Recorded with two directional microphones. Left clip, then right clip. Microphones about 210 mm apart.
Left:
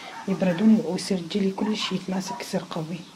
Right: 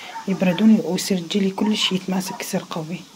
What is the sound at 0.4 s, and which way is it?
Speech, 30° right (ahead or behind).